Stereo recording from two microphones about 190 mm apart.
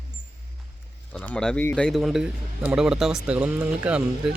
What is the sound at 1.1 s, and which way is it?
Speech, 5° left (ahead or behind).